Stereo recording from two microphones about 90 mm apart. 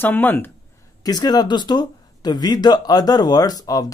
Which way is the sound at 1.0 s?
45° left (ahead or behind).